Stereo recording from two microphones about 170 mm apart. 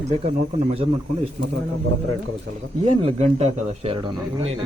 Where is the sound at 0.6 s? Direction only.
35° right (ahead or behind).